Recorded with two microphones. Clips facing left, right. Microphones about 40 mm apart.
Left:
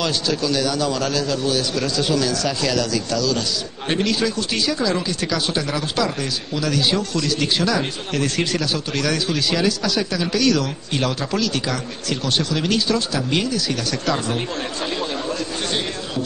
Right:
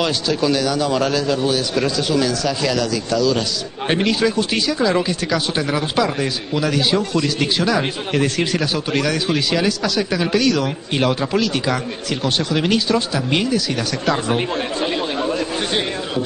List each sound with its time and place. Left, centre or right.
0.0 s a man's voice: centre
9.7 s speech: centre
10.1 s a man's voice: right
14.0 s chatter: centre